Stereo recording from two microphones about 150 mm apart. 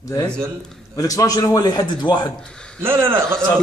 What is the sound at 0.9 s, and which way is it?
A man's voice, 25° left (ahead or behind).